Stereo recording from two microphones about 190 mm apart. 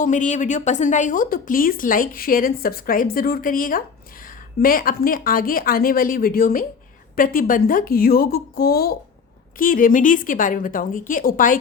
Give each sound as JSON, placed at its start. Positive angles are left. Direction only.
{"t": 0.0, "sound": "a woman's voice", "side_deg": 40}